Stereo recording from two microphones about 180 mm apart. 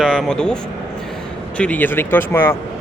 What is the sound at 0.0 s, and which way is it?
Speech, centre (ahead or behind).